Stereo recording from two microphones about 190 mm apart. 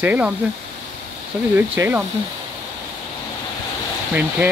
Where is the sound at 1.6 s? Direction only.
10° right (ahead or behind).